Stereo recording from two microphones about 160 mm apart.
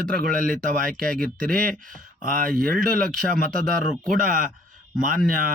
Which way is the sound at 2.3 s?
60° right (ahead or behind).